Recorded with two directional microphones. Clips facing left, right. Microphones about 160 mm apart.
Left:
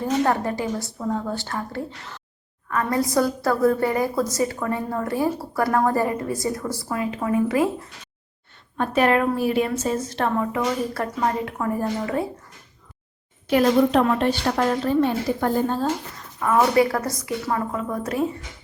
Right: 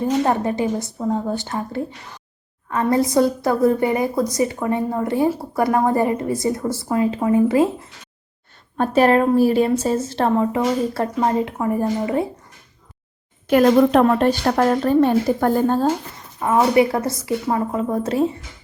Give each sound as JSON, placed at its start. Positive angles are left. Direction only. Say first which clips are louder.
{"t": 0.0, "sound": "a woman's voice", "louder": "right 3 dB", "side_deg": -20}
{"t": 13.5, "sound": "a woman's voice", "louder": "right 4 dB", "side_deg": -50}
{"t": 16.4, "sound": "a woman's voice", "louder": "right 2 dB", "side_deg": -25}